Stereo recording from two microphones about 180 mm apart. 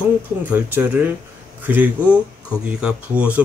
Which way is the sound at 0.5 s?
10° right (ahead or behind).